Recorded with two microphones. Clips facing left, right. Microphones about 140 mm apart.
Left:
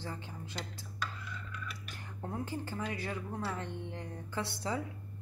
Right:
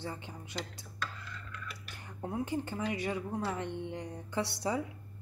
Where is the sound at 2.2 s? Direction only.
15° right (ahead or behind).